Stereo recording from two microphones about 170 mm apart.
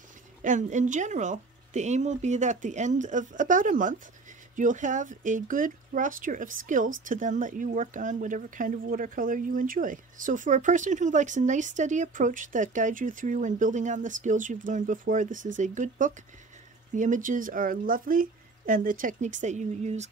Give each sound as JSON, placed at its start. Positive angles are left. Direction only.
{"t": 0.4, "sound": "speech", "side_deg": -45}